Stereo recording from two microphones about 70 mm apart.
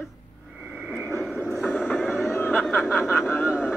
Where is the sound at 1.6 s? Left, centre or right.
Left.